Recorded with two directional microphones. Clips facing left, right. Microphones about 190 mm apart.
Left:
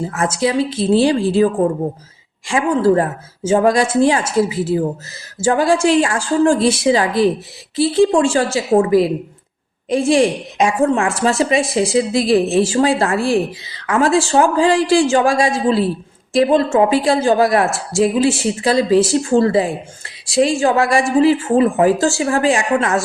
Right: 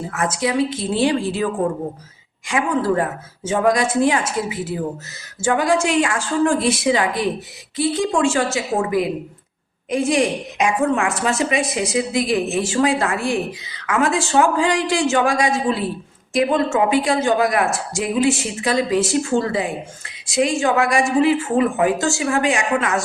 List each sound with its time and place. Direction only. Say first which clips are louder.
0.1 s a woman's voice: left 2 dB; 30° left (ahead or behind)
2.5 s a woman's voice: left 5 dB; 30° left (ahead or behind)